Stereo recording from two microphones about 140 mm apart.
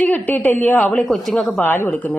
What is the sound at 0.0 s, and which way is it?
A woman's voice, 10° left (ahead or behind).